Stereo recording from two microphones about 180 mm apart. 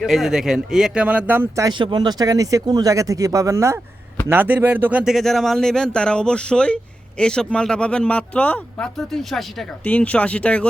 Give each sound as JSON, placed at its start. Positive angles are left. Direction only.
{"t": 0.0, "sound": "speech", "side_deg": 0}